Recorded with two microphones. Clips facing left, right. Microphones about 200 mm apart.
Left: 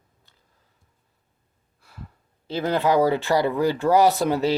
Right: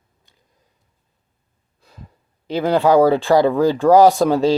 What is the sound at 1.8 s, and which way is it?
Gasp, 15° right (ahead or behind).